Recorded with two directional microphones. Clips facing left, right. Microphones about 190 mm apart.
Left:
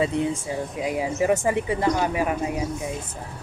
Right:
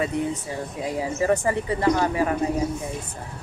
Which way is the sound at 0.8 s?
15° left (ahead or behind).